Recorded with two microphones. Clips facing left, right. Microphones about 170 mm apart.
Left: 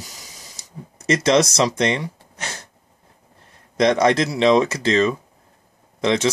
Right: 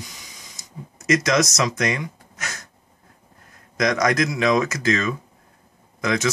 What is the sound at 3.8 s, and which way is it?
Speech, 30° left (ahead or behind).